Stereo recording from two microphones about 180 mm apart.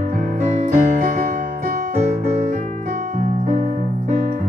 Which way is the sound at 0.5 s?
40° right (ahead or behind).